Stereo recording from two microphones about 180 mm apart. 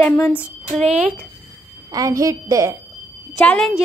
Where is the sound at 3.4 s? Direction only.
5° left (ahead or behind).